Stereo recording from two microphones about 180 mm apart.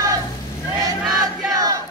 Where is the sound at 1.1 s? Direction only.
20° right (ahead or behind).